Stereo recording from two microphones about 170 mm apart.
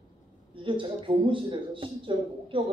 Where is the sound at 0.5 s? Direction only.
30° right (ahead or behind).